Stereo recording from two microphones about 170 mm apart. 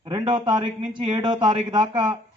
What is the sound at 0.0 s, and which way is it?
A man's voice, 30° right (ahead or behind).